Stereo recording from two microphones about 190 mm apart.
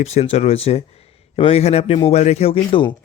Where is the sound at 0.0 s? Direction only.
35° left (ahead or behind).